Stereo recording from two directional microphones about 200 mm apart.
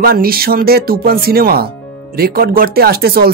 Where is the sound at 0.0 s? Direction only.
50° right (ahead or behind).